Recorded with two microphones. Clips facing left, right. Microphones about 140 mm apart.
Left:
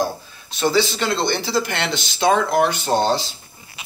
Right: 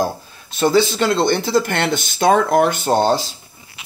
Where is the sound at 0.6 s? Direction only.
50° right (ahead or behind).